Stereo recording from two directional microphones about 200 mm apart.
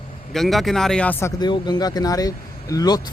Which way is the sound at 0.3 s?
Centre (ahead or behind).